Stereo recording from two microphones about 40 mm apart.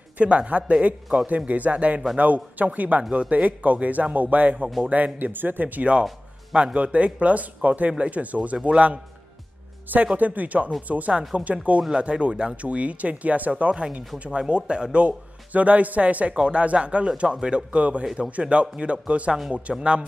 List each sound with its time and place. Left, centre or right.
0.2 s speech: right
3.0 s speech: right
3.4 s speech: right
6.5 s speech: right
10.1 s speech: right
11.1 s speech: right